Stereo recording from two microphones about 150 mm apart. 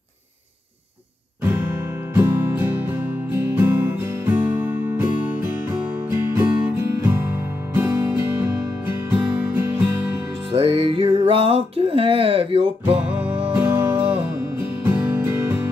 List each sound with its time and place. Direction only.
1.4 s music: 15° right (ahead or behind)
10.5 s music: 40° right (ahead or behind)
12.9 s music: 15° right (ahead or behind)